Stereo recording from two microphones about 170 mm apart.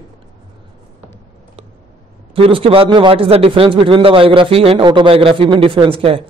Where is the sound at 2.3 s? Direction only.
35° right (ahead or behind).